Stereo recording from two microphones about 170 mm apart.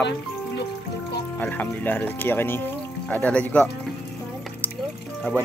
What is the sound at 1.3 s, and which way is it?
Speech, 10° left (ahead or behind).